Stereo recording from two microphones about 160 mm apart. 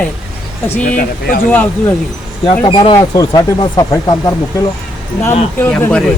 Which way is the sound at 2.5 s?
30° left (ahead or behind).